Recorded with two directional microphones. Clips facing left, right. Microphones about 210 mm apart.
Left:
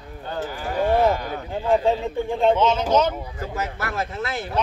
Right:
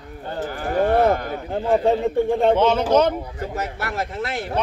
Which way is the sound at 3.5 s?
35° right (ahead or behind).